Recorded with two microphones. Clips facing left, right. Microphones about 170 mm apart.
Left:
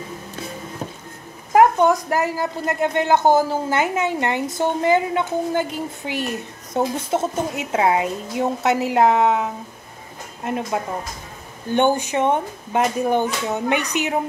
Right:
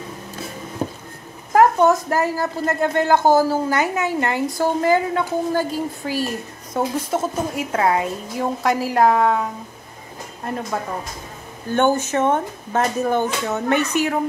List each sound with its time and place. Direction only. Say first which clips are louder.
1.9 s speech: right 1 dB; 15° left (ahead or behind)